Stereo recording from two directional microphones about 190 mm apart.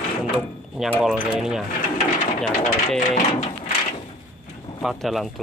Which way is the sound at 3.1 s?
40° left (ahead or behind).